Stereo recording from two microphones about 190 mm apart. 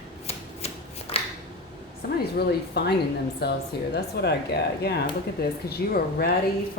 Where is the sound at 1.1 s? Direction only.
30° left (ahead or behind).